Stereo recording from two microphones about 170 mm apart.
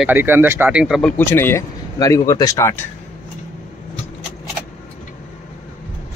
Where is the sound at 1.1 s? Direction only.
15° left (ahead or behind).